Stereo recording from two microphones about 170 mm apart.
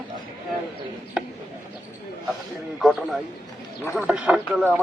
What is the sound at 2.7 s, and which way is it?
A man's voice, centre (ahead or behind).